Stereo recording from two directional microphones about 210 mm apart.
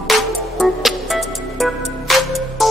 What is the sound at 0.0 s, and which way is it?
Music, centre (ahead or behind).